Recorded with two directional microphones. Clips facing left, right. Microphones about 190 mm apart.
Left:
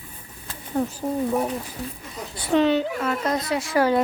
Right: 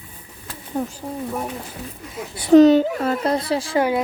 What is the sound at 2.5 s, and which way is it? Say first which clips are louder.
Speech: right 9 dB; 40° right (ahead or behind).